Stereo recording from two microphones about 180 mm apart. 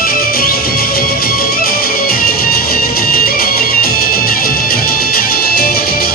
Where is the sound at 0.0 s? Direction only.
55° left (ahead or behind).